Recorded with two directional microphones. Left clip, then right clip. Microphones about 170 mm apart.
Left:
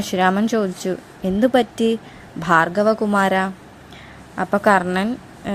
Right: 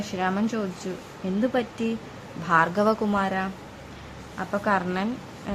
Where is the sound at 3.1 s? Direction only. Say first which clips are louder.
Left 8 dB; 45° left (ahead or behind).